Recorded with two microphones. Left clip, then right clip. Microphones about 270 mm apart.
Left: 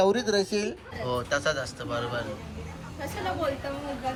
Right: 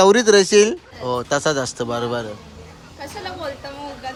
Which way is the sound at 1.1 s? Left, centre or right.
Centre.